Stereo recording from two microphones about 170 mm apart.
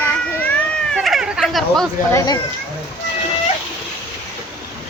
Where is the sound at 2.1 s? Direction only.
20° left (ahead or behind).